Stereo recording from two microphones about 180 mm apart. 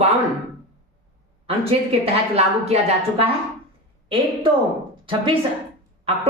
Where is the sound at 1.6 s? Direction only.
35° right (ahead or behind).